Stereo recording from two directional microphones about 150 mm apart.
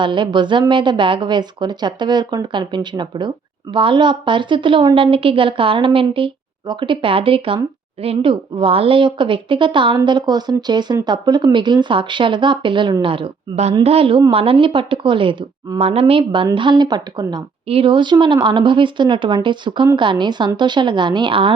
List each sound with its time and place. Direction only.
0.0 s speech: 30° right (ahead or behind)
5.1 s speech: 35° right (ahead or behind)